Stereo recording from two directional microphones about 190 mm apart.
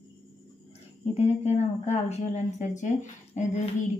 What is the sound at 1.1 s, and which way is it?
Speech, 35° left (ahead or behind).